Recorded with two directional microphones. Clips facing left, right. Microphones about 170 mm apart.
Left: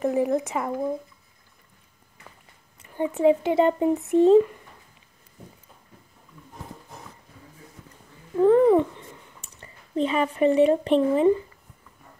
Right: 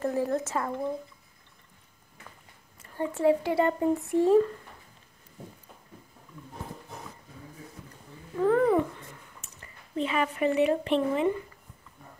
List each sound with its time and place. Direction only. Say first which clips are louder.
0.0 s speech: left 5 dB; 15° left (ahead or behind)
3.0 s speech: left 4 dB; 20° left (ahead or behind)
8.5 s cat: left 6 dB; 20° left (ahead or behind)
9.4 s speech: left 2 dB; 30° left (ahead or behind)